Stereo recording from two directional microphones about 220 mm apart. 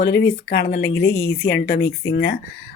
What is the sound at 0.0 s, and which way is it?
Speech, 50° left (ahead or behind).